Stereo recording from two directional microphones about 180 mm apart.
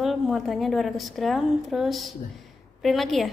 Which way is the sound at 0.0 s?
Centre (ahead or behind).